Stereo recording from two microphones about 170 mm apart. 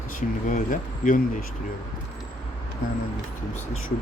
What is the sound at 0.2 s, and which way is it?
Speech, 50° left (ahead or behind).